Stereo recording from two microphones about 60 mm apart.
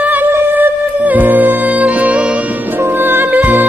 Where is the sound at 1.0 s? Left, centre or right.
Right.